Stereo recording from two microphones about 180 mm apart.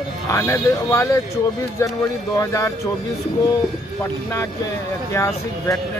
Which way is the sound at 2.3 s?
20° left (ahead or behind).